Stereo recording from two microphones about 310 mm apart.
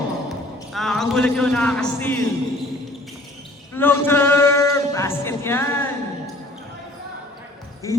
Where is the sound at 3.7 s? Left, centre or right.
Centre.